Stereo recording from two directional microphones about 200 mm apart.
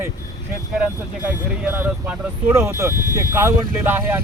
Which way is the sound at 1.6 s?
10° right (ahead or behind).